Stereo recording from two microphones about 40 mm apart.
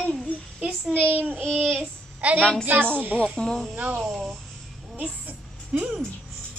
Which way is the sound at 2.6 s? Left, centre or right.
Right.